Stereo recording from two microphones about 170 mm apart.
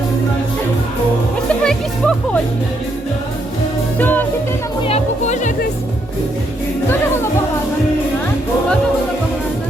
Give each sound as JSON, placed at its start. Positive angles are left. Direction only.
{"t": 1.6, "sound": "music", "side_deg": 5}
{"t": 4.0, "sound": "music", "side_deg": 10}
{"t": 4.8, "sound": "music", "side_deg": 35}